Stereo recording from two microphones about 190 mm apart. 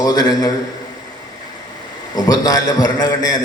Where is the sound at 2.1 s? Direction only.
20° left (ahead or behind).